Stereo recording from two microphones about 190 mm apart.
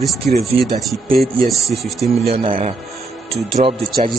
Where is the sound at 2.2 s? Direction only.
30° right (ahead or behind).